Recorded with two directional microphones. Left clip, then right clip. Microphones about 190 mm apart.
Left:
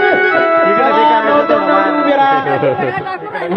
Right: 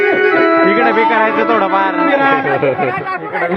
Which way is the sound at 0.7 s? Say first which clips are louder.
Left 2 dB; 60° right (ahead or behind).